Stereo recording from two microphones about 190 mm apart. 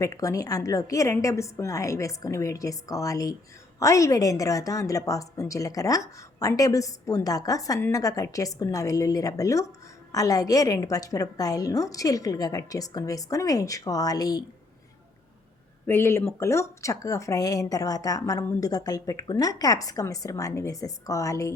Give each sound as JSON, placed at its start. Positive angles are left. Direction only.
{"t": 0.0, "sound": "a woman's voice", "side_deg": 15}
{"t": 15.9, "sound": "a woman's voice", "side_deg": 15}